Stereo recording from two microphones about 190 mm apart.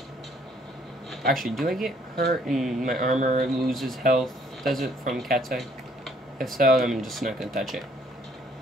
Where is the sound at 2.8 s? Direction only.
40° right (ahead or behind).